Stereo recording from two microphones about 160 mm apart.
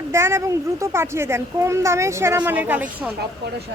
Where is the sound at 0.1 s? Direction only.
15° right (ahead or behind).